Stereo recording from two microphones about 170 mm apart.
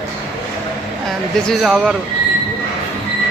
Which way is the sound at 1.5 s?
5° right (ahead or behind).